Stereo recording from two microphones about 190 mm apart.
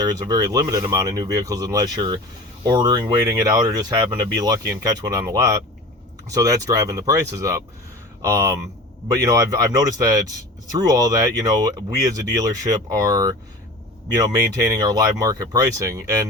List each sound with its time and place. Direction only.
0.0 s speech: 20° right (ahead or behind)